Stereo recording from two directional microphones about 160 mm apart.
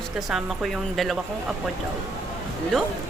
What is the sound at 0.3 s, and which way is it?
Speech, centre (ahead or behind).